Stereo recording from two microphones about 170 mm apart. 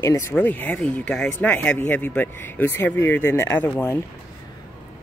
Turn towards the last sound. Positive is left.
turn(degrees=10)  # may be behind; listen again after turning